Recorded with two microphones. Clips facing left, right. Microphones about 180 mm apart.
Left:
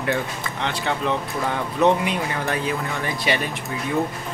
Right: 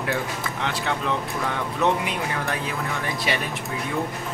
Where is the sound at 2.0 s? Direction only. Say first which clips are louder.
Left 3 dB; centre (ahead or behind).